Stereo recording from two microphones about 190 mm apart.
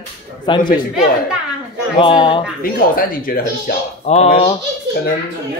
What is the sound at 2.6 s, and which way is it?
Speech, 50° left (ahead or behind).